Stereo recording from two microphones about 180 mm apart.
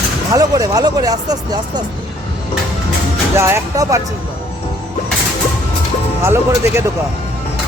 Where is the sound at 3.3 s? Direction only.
15° right (ahead or behind).